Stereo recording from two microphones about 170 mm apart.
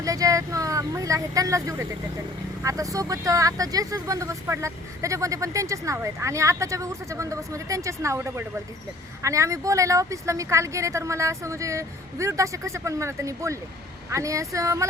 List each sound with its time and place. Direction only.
0.0 s speech: 20° right (ahead or behind)